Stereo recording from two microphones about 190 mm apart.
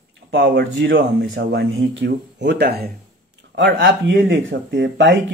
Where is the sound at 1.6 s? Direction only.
60° right (ahead or behind).